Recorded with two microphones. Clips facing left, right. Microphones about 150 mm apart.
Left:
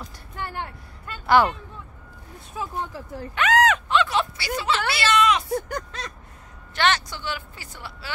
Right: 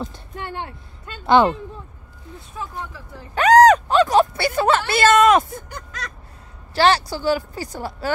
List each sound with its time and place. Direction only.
0.0 s speech: 25° right (ahead or behind)
2.6 s speech: 10° left (ahead or behind)
3.3 s speech: 40° right (ahead or behind)
5.9 s a sound: 25° left (ahead or behind)
6.7 s speech: 35° right (ahead or behind)